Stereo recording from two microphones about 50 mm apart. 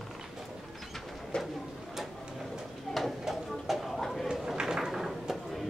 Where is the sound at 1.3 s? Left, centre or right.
Centre.